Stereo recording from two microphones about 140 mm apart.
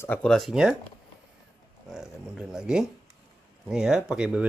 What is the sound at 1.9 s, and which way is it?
Speech, 5° right (ahead or behind).